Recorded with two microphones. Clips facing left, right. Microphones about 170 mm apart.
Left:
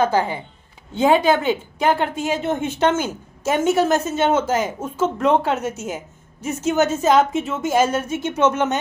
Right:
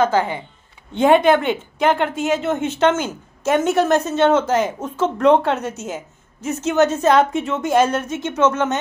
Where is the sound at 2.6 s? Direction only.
10° left (ahead or behind).